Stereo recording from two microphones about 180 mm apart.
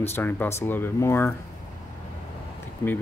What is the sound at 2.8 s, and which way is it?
Speech, 15° left (ahead or behind).